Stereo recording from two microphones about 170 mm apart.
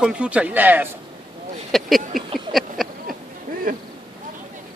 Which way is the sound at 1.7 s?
Centre (ahead or behind).